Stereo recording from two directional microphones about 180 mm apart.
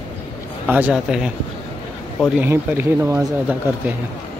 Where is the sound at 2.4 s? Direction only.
10° right (ahead or behind).